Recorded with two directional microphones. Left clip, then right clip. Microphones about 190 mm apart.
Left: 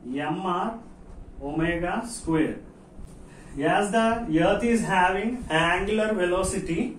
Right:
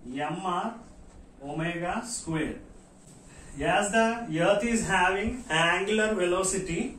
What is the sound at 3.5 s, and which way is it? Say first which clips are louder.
Speech: left 2 dB; 15° right (ahead or behind).